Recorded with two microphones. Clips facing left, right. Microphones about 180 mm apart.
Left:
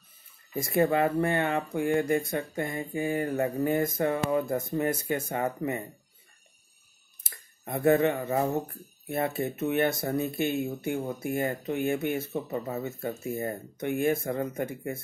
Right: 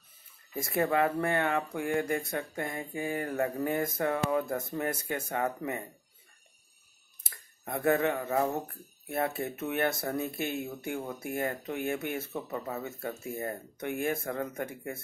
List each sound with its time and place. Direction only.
0.6 s speech: centre (ahead or behind)
4.5 s speech: 20° left (ahead or behind)
4.7 s speech: centre (ahead or behind)
7.2 s speech: centre (ahead or behind)
12.3 s speech: 10° left (ahead or behind)